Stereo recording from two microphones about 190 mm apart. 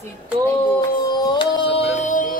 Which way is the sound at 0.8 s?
20° left (ahead or behind).